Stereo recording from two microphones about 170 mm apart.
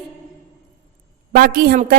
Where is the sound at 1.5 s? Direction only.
60° right (ahead or behind).